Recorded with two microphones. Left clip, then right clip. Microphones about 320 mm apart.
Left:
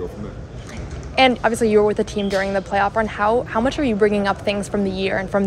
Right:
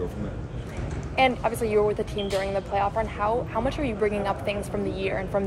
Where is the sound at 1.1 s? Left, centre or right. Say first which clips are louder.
Left 7 dB; left.